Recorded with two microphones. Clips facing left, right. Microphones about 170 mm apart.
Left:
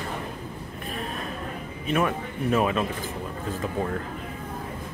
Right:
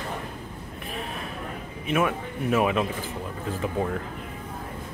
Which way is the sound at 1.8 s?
5° right (ahead or behind).